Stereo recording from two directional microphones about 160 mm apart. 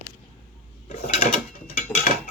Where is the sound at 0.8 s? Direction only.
45° left (ahead or behind).